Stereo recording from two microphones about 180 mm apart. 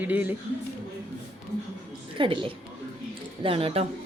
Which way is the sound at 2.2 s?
30° right (ahead or behind).